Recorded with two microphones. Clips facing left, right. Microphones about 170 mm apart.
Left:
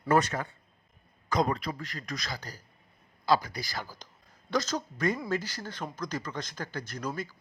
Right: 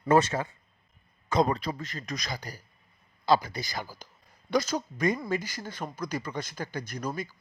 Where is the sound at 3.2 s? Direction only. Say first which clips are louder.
Right 2 dB; 25° right (ahead or behind).